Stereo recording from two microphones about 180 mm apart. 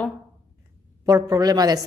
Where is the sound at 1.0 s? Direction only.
20° right (ahead or behind).